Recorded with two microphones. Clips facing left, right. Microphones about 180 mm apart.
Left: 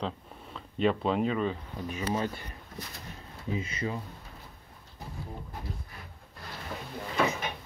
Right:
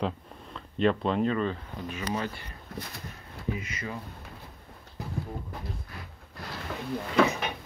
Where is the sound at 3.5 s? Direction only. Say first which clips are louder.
Left 4 dB; 30° left (ahead or behind).